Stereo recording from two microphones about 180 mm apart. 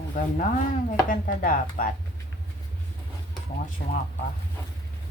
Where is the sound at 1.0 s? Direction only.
50° left (ahead or behind).